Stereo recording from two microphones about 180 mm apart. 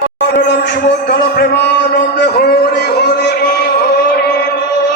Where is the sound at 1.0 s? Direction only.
65° left (ahead or behind).